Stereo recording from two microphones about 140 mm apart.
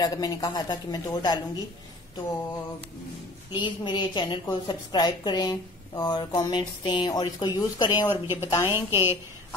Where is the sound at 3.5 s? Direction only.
35° left (ahead or behind).